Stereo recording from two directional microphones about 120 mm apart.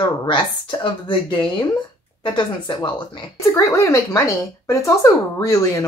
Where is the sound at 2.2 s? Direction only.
40° left (ahead or behind).